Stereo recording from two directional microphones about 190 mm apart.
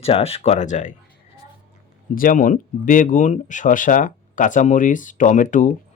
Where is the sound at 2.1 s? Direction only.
45° left (ahead or behind).